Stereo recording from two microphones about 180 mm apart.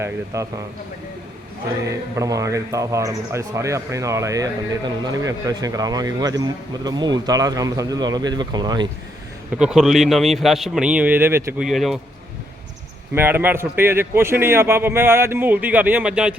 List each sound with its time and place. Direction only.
0.0 s a man's voice: 15° right (ahead or behind)
1.9 s a man's voice: 20° right (ahead or behind)
9.6 s a man's voice: 5° right (ahead or behind)
11.6 s a man's voice: centre (ahead or behind)
13.1 s a man's voice: 10° right (ahead or behind)